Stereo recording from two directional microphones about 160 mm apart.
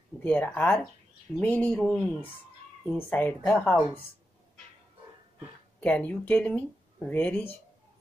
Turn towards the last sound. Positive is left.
turn(degrees=10)  # may be behind; listen again after turning